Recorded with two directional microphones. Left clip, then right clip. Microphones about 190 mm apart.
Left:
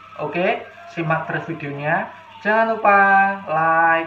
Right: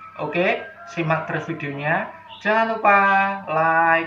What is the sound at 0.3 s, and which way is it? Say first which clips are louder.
Speech: even; centre (ahead or behind).